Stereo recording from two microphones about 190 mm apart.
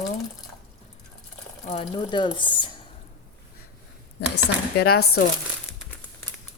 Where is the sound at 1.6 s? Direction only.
30° left (ahead or behind).